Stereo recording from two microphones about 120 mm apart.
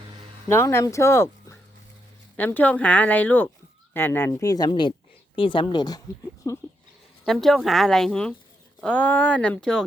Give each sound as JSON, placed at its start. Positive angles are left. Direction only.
{"t": 0.4, "sound": "speech", "side_deg": 20}
{"t": 4.3, "sound": "speech", "side_deg": 30}
{"t": 7.3, "sound": "speech", "side_deg": 5}